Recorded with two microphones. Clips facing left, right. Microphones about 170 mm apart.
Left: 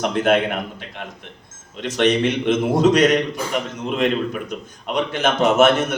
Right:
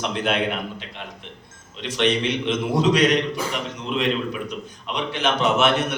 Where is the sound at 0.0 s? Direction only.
50° left (ahead or behind).